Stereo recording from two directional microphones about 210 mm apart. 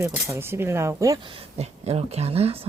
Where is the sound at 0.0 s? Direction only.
10° right (ahead or behind).